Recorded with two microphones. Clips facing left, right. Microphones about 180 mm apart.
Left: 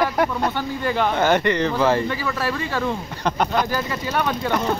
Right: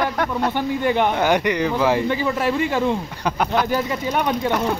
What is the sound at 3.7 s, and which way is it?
Speech, 15° right (ahead or behind).